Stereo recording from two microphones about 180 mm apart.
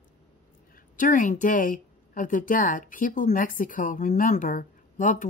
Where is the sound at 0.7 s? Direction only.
45° left (ahead or behind).